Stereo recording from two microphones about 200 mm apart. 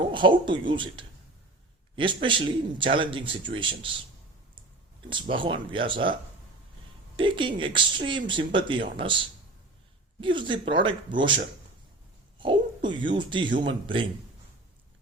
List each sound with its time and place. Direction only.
0.0 s speech: 25° right (ahead or behind)
5.3 s speech: 25° right (ahead or behind)
7.2 s speech: 25° right (ahead or behind)
10.2 s speech: 25° right (ahead or behind)
12.4 s speech: 25° right (ahead or behind)